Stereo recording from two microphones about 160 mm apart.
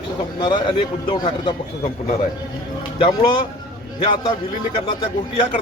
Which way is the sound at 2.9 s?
30° left (ahead or behind).